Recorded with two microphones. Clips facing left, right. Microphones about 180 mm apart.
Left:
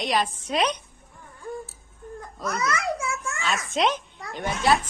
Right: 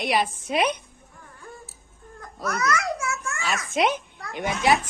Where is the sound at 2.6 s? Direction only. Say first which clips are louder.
Right 1 dB; 30° left (ahead or behind).